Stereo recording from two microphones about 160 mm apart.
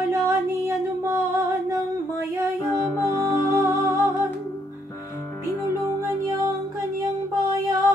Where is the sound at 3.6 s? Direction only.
15° right (ahead or behind).